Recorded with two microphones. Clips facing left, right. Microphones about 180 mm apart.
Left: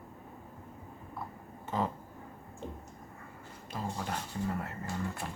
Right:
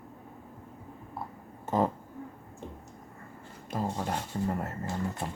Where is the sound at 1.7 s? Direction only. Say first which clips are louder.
Right 6 dB; 45° right (ahead or behind).